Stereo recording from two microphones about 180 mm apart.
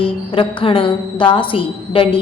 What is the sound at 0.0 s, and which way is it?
A woman's voice, 30° left (ahead or behind).